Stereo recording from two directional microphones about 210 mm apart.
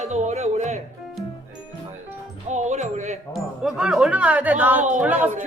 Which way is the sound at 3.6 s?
5° right (ahead or behind).